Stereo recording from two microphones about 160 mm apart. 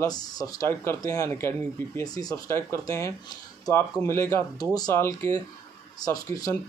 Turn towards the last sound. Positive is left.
turn(degrees=20)  # may be behind; listen again after turning